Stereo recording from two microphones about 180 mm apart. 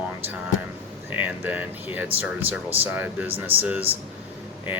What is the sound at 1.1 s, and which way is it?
Speech, 10° right (ahead or behind).